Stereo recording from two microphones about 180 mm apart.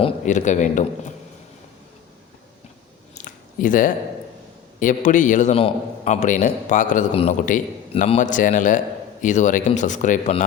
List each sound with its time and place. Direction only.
0.0 s a man's voice: 45° left (ahead or behind)
3.2 s a sound: 50° left (ahead or behind)
4.8 s a man's voice: 45° left (ahead or behind)